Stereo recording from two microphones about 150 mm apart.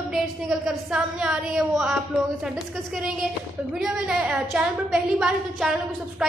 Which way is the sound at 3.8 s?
5° right (ahead or behind).